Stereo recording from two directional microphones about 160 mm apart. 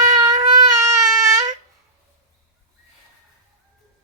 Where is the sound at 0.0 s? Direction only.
25° right (ahead or behind).